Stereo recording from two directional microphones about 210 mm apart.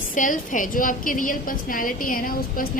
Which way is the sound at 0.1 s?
40° left (ahead or behind).